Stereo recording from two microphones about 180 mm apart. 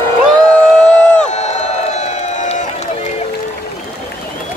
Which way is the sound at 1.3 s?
40° left (ahead or behind).